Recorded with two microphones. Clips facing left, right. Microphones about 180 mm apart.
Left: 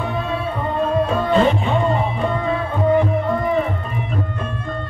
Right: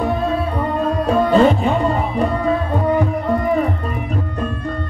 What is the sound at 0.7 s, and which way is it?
Music, 40° right (ahead or behind).